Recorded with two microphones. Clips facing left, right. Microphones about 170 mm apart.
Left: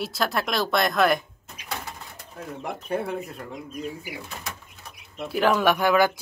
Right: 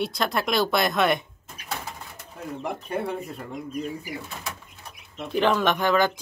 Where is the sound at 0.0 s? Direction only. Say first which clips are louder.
Right 1 dB; centre (ahead or behind).